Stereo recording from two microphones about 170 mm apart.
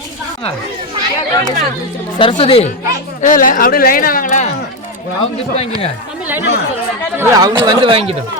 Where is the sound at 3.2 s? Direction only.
50° left (ahead or behind).